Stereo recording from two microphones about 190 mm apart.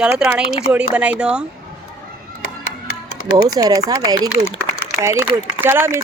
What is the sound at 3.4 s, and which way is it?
A man's voice, 20° right (ahead or behind).